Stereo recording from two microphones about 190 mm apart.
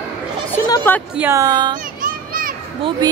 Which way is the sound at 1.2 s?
15° right (ahead or behind).